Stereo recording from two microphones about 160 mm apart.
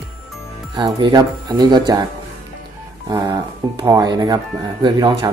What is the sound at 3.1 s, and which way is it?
Speech, 25° right (ahead or behind).